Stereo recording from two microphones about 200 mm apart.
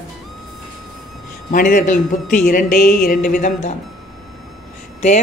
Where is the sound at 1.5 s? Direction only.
45° left (ahead or behind).